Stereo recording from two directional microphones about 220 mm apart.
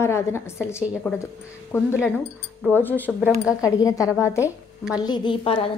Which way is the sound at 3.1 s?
5° right (ahead or behind).